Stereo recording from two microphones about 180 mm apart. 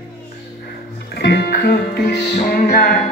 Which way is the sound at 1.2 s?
65° left (ahead or behind).